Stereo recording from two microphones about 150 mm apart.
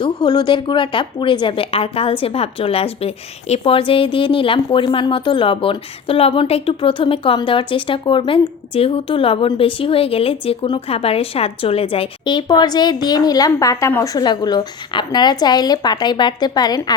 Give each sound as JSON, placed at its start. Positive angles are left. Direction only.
{"t": 0.0, "sound": "a woman's voice", "side_deg": 30}